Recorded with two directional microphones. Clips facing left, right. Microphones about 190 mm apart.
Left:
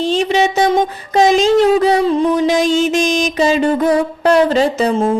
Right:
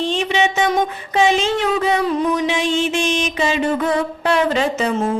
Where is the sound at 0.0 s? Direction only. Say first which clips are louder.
Left 4 dB; 40° left (ahead or behind).